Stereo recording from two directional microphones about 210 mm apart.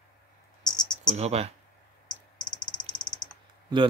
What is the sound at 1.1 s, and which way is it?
Speech, 30° right (ahead or behind).